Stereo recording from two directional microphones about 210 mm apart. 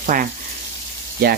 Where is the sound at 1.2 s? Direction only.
45° right (ahead or behind).